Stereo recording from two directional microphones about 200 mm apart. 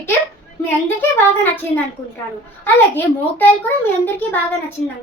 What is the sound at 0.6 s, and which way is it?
A woman's voice, 10° left (ahead or behind).